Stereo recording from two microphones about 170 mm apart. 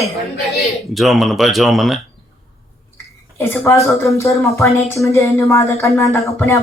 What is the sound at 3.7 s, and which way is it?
Speech, 15° left (ahead or behind).